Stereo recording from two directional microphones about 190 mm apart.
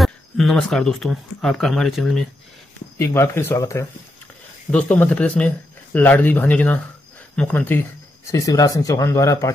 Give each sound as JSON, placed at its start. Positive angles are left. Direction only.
{"t": 0.0, "sound": "speech", "side_deg": 0}
{"t": 3.0, "sound": "speech", "side_deg": 15}